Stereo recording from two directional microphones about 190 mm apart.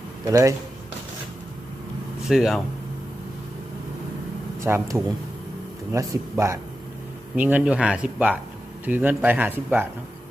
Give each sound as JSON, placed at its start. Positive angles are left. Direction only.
{"t": 0.3, "sound": "speech", "side_deg": -15}
{"t": 2.2, "sound": "speech", "side_deg": 0}
{"t": 4.6, "sound": "speech", "side_deg": -15}